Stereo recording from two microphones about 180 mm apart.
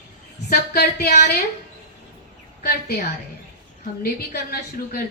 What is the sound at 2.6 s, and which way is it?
A woman's voice, 60° left (ahead or behind).